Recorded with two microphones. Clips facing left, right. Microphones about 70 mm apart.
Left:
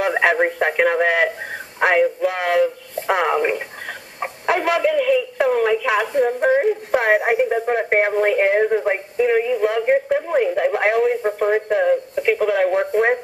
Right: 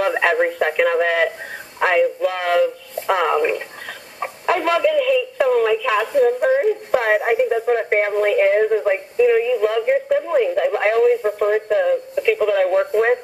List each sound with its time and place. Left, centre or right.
0.0 s speech: centre
2.2 s a sound: centre
4.9 s a sound: left
5.9 s a woman's voice: centre
8.9 s speech: left
9.6 s speech: centre